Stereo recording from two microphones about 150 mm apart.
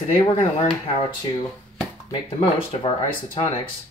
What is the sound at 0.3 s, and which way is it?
Speech, 40° left (ahead or behind).